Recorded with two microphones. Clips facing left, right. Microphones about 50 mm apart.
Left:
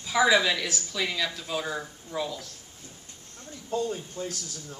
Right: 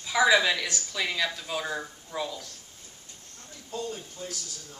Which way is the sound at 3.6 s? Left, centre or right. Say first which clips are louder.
Left 5 dB; left.